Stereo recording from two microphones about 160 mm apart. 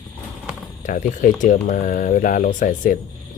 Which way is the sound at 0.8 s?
50° left (ahead or behind).